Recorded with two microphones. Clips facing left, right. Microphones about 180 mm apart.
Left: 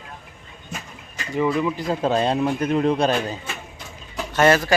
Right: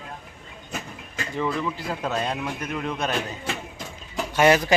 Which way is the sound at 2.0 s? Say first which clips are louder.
Left 8 dB; 30° left (ahead or behind).